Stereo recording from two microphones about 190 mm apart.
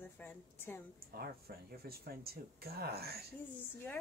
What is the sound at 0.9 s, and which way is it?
Speech, 55° right (ahead or behind).